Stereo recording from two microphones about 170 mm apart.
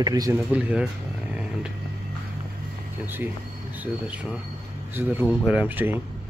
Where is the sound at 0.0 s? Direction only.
20° right (ahead or behind).